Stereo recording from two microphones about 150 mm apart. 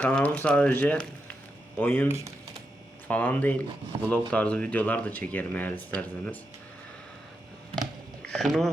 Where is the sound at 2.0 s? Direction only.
20° right (ahead or behind).